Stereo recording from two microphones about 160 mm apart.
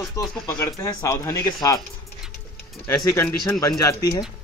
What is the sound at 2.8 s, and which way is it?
Speech, 15° left (ahead or behind).